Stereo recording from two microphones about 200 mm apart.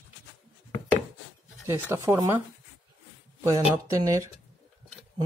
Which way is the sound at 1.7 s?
15° right (ahead or behind).